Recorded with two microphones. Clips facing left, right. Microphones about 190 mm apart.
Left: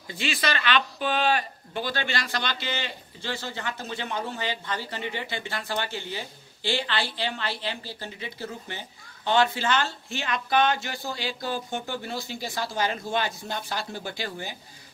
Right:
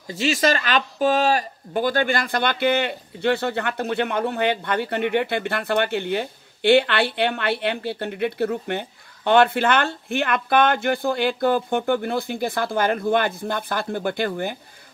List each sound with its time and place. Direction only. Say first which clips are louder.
0.1 s speech: right 8 dB; 40° right (ahead or behind)